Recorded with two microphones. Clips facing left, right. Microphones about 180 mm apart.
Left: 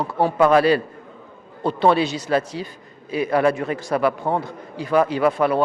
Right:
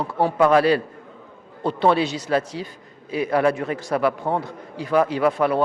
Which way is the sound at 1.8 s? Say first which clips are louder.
Left 1 dB; 15° left (ahead or behind).